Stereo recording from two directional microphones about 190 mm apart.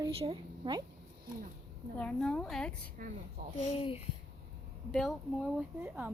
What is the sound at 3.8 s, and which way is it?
Speech, 25° left (ahead or behind).